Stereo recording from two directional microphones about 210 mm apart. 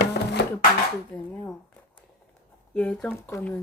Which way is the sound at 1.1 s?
10° left (ahead or behind).